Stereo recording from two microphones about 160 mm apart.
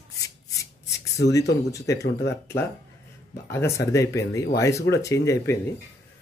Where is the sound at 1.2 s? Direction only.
90° left.